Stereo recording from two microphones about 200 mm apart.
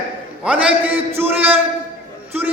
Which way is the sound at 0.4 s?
10° right (ahead or behind).